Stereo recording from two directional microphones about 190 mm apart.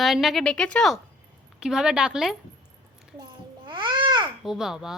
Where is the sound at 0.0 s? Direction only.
Centre (ahead or behind).